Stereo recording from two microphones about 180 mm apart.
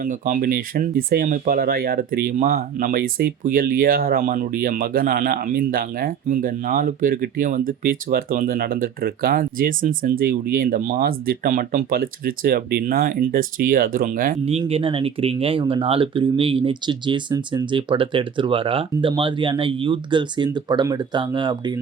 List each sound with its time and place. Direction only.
0.0 s speech: 50° right (ahead or behind)
14.6 s speech: 30° right (ahead or behind)